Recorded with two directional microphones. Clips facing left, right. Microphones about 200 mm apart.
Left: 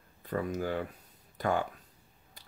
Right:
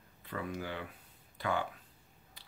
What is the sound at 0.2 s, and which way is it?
Speech, 40° left (ahead or behind).